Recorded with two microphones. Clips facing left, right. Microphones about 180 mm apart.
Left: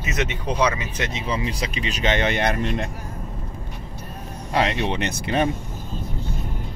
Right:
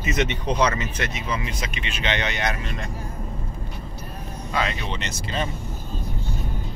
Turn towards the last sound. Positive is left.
turn(degrees=60)  # may be behind; listen again after turning